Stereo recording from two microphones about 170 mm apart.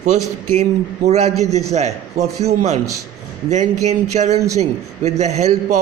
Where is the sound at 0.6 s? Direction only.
40° right (ahead or behind).